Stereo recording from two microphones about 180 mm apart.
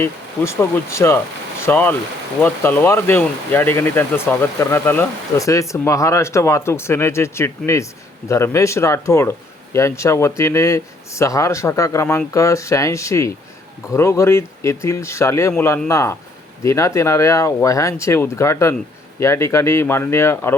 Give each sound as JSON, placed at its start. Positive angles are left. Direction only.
{"t": 0.0, "sound": "speech", "side_deg": 15}